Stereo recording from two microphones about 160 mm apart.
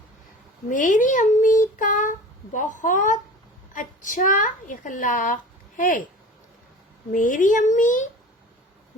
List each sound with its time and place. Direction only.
0.7 s a child's voice: 55° left (ahead or behind)
7.1 s speech: 55° left (ahead or behind)